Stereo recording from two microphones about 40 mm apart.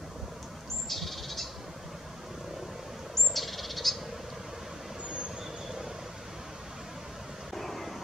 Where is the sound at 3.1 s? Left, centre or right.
Centre.